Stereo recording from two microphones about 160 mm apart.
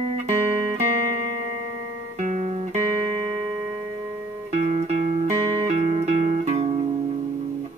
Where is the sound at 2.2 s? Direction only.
50° right (ahead or behind).